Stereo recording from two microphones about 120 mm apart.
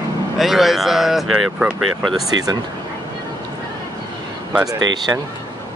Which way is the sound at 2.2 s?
35° right (ahead or behind).